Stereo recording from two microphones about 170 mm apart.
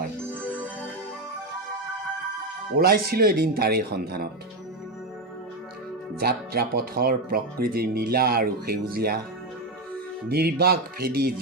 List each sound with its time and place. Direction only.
2.7 s speech: 60° right (ahead or behind)
6.1 s speech: 65° right (ahead or behind)
10.2 s speech: 65° right (ahead or behind)